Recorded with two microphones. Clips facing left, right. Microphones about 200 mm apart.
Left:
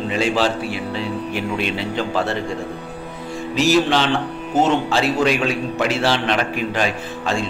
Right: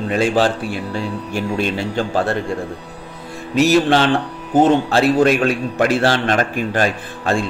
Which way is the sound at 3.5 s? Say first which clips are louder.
Right 3 dB; 55° right (ahead or behind).